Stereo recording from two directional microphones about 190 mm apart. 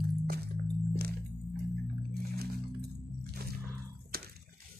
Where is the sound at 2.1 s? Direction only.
55° right (ahead or behind).